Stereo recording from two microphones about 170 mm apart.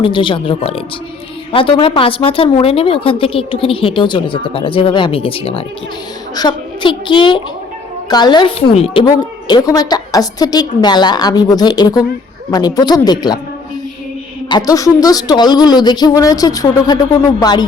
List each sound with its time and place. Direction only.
0.0 s a woman's voice: 30° left (ahead or behind)
14.5 s a woman's voice: 20° left (ahead or behind)